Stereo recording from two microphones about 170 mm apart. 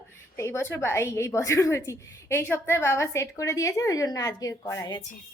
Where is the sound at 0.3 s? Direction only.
15° left (ahead or behind).